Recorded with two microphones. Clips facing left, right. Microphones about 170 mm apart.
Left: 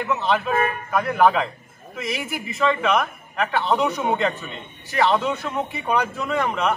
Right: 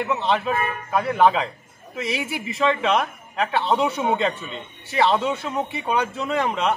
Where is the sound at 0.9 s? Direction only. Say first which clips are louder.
Even; 25° right (ahead or behind).